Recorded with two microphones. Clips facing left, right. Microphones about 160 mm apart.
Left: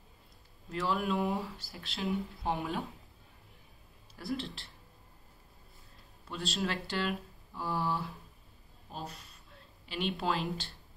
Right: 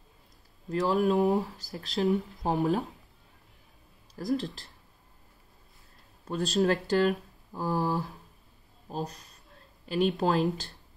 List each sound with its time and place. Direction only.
0.7 s speech: 40° right (ahead or behind)
4.1 s speech: 40° right (ahead or behind)
6.2 s speech: 45° right (ahead or behind)